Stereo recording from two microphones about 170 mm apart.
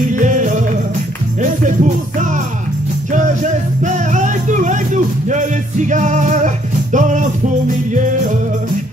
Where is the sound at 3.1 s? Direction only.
45° right (ahead or behind).